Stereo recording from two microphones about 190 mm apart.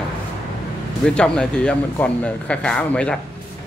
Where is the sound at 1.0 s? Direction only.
5° left (ahead or behind).